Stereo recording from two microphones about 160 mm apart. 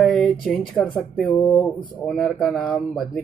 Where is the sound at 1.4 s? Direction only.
20° left (ahead or behind).